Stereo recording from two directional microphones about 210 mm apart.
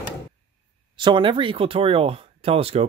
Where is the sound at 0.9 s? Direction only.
25° right (ahead or behind).